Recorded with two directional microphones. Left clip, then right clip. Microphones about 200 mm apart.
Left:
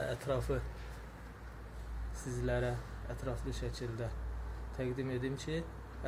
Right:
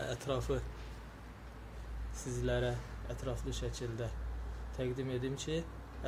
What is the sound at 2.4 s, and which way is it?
Speech, 5° right (ahead or behind).